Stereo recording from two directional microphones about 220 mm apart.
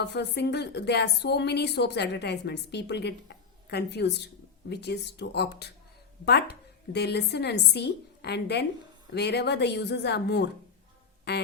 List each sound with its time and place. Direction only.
0.0 s a woman's voice: 50° left (ahead or behind)